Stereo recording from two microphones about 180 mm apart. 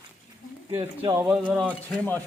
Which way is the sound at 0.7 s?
25° right (ahead or behind).